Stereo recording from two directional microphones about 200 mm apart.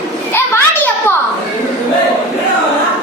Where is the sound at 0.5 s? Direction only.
10° left (ahead or behind).